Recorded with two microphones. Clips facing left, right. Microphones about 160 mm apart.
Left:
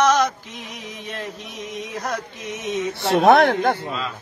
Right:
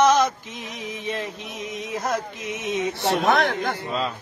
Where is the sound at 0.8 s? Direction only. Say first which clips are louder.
Right 3 dB; 45° left (ahead or behind).